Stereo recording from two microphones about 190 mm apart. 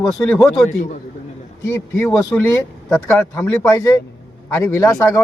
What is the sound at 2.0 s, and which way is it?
Speech, 5° left (ahead or behind).